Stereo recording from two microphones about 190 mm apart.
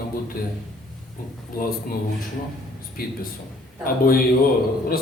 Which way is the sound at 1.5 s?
50° left (ahead or behind).